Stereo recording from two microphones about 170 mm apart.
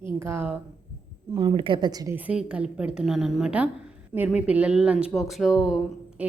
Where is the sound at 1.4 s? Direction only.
30° right (ahead or behind).